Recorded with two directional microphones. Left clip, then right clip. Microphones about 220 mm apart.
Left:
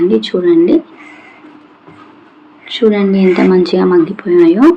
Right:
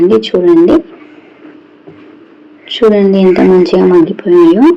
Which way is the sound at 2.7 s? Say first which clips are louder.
Right 4 dB; 5° right (ahead or behind).